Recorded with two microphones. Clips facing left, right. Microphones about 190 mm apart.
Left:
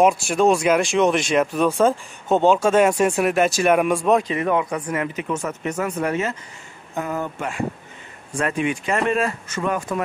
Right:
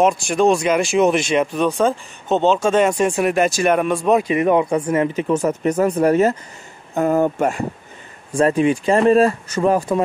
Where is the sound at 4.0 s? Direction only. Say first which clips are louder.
Right 3 dB; 10° right (ahead or behind).